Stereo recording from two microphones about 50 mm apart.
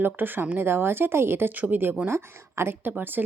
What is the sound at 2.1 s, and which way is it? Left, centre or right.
Speech, right.